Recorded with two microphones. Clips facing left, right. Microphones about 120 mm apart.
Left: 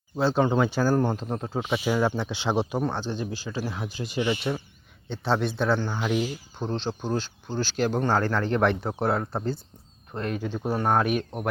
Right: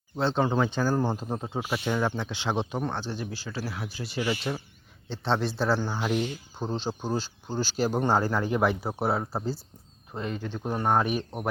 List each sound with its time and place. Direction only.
0.2 s speech: 5° left (ahead or behind)
0.9 s speech: 5° right (ahead or behind); by 4.4 s 20° left (ahead or behind)
5.0 s speech: centre (ahead or behind)
10.4 s speech: 15° left (ahead or behind)
10.8 s speech: centre (ahead or behind)